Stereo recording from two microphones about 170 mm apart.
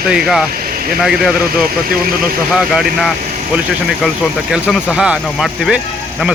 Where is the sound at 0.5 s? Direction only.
55° right (ahead or behind).